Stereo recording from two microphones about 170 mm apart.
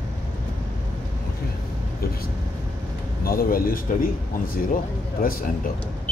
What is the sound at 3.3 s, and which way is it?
Speech, 60° left (ahead or behind).